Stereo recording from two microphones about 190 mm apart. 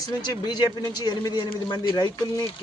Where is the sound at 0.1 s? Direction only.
20° left (ahead or behind).